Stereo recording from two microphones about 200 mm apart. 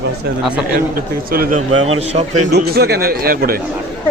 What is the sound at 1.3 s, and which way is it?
Speech, 50° right (ahead or behind).